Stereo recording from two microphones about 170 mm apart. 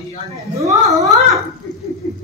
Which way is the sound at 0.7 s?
20° right (ahead or behind).